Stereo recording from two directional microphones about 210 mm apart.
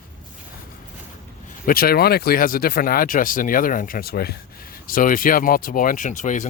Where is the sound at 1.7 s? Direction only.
45° left (ahead or behind).